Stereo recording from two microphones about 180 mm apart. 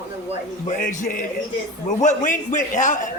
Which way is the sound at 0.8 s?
45° left (ahead or behind).